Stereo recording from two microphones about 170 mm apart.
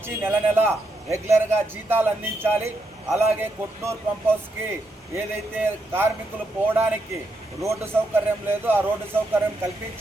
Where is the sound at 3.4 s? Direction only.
15° right (ahead or behind).